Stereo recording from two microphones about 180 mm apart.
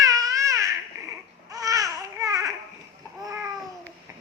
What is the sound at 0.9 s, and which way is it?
Babbling, 15° right (ahead or behind).